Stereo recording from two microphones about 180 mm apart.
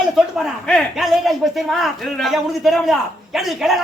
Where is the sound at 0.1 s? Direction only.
Centre (ahead or behind).